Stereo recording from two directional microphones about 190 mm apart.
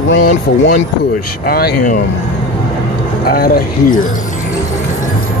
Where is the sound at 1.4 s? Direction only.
50° left (ahead or behind).